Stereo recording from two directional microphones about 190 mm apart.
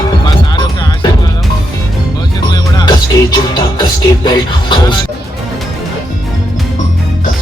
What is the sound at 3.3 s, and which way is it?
Speech, 20° left (ahead or behind).